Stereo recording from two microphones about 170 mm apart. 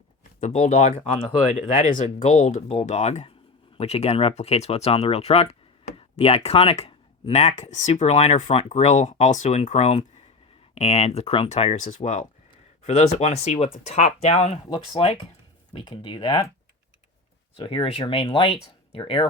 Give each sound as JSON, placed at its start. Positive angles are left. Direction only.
{"t": 0.3, "sound": "speech", "side_deg": 45}
{"t": 17.6, "sound": "speech", "side_deg": 30}